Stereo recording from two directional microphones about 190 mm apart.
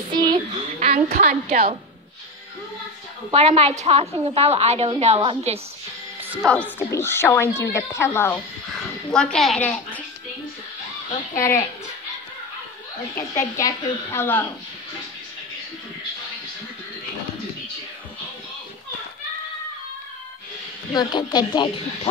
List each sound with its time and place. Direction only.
0.1 s speech: 20° right (ahead or behind)
0.7 s a sound: 35° right (ahead or behind)
1.1 s a woman's voice: 45° right (ahead or behind)
3.3 s a woman's voice: 30° right (ahead or behind)
6.2 s music: 10° right (ahead or behind)
6.5 s a child's voice: 10° left (ahead or behind)
11.1 s speech: 15° left (ahead or behind)
13.6 s speech: 15° left (ahead or behind)
20.9 s speech: 20° left (ahead or behind)